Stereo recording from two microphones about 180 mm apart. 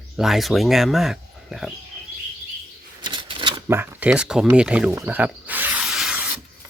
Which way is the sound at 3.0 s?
25° right (ahead or behind).